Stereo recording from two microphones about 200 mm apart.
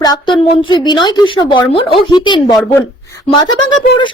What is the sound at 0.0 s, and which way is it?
A woman's voice, 20° left (ahead or behind).